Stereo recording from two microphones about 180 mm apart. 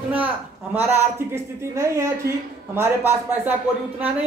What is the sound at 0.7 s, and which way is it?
A woman's voice, 10° right (ahead or behind).